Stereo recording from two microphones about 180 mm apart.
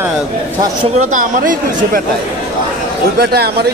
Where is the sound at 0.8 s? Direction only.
40° right (ahead or behind).